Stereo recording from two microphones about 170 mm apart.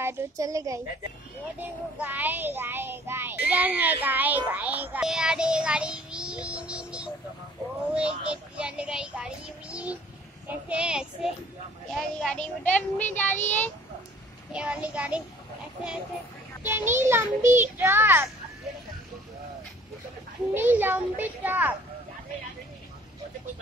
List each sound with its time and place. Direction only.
0.0 s a woman's voice: 20° right (ahead or behind)
1.6 s child singing: 10° right (ahead or behind)
11.9 s speech: centre (ahead or behind)
14.5 s child singing: 5° right (ahead or behind)
16.6 s child singing: 15° right (ahead or behind)
20.5 s child singing: 10° right (ahead or behind)